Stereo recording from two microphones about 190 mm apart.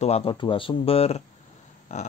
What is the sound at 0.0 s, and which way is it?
Speech, 30° left (ahead or behind).